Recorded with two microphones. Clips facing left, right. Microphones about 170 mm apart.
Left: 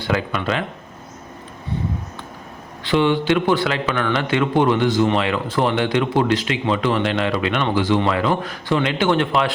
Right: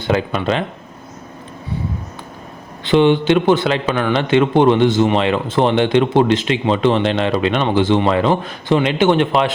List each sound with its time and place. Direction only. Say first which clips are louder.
0.0 s a man's voice: right 4 dB; 25° right (ahead or behind)
2.8 s a man's voice: right 5 dB; 20° right (ahead or behind)